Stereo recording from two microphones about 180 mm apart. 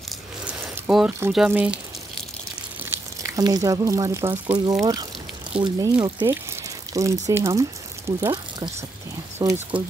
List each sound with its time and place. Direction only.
0.5 s speech: 5° right (ahead or behind)
2.8 s speech: 15° right (ahead or behind)